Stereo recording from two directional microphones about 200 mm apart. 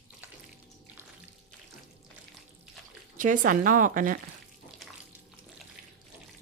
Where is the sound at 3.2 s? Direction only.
40° right (ahead or behind).